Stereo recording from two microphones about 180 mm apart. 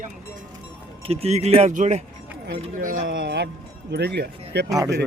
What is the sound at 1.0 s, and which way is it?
Speech, 35° right (ahead or behind).